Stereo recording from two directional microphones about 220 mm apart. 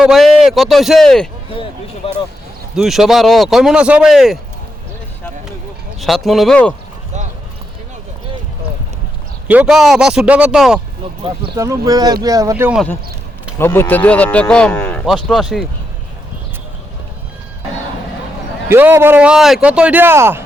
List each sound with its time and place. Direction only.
0.0 s speech: centre (ahead or behind)
2.7 s speech: centre (ahead or behind)
6.0 s speech: centre (ahead or behind)
9.5 s speech: 5° right (ahead or behind)
11.5 s speech: 15° right (ahead or behind)
13.6 s speech: 10° left (ahead or behind)
18.7 s speech: 10° right (ahead or behind)